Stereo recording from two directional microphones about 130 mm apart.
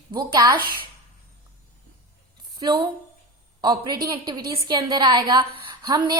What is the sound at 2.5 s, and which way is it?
A woman's voice, 30° right (ahead or behind).